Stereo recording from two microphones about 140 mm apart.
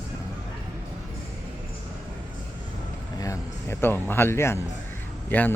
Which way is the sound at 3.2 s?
20° left (ahead or behind).